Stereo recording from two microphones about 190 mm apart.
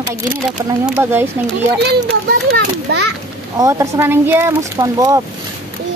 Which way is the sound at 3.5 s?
15° right (ahead or behind).